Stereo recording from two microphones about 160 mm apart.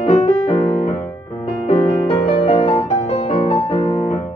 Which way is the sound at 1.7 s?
40° left (ahead or behind).